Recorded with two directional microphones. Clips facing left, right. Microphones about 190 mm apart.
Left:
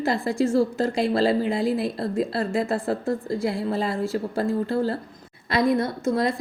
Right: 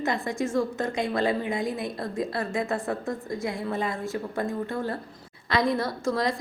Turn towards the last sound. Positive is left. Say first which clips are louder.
# left 3 dB
turn(degrees=25)  # may be behind; listen again after turning